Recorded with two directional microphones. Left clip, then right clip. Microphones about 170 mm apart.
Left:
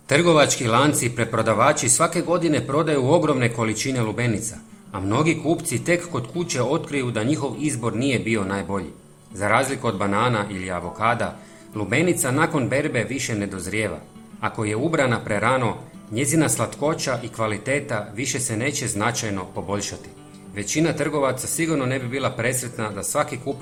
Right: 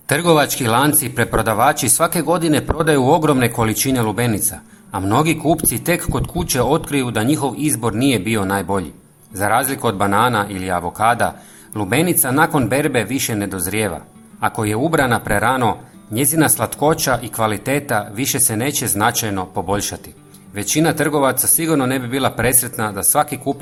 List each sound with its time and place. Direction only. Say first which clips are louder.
0.1 s speech: right 2 dB; 35° right (ahead or behind)